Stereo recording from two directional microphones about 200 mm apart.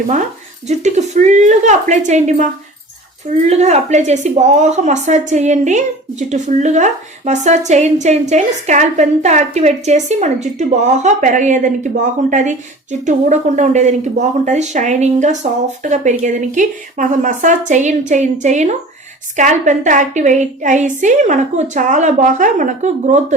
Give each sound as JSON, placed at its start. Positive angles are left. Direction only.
{"t": 0.7, "sound": "speech", "side_deg": -35}